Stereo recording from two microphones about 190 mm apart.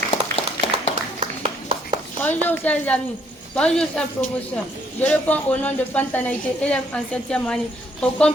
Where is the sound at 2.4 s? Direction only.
10° left (ahead or behind).